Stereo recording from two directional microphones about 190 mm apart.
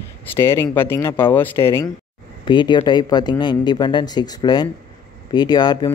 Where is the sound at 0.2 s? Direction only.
10° left (ahead or behind).